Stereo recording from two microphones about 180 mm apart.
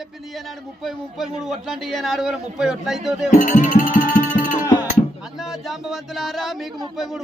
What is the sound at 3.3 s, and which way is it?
Speech, 45° left (ahead or behind).